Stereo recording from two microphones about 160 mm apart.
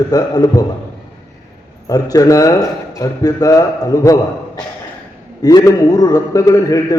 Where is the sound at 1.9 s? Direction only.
20° left (ahead or behind).